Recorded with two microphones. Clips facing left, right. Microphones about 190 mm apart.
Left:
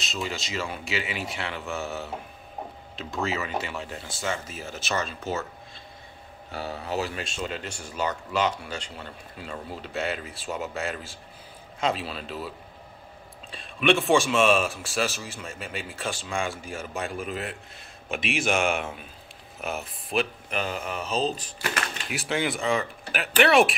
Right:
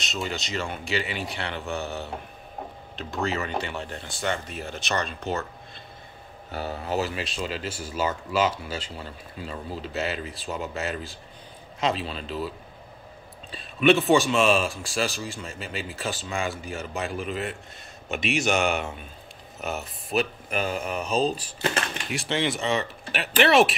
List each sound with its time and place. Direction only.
0.0 s speech: centre (ahead or behind)
6.5 s speech: centre (ahead or behind)
20.1 s speech: 5° right (ahead or behind)
20.4 s speech: 45° right (ahead or behind)
20.8 s mantra: 15° right (ahead or behind)
21.5 s speech: 25° right (ahead or behind)
22.1 s speech: centre (ahead or behind)